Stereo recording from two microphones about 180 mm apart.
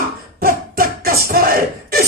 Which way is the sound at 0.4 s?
55° right (ahead or behind).